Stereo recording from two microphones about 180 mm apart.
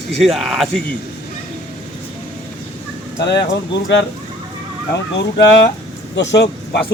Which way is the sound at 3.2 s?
70° left (ahead or behind).